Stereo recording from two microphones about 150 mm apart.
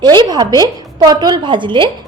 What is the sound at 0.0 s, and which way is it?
A woman's voice, 30° right (ahead or behind).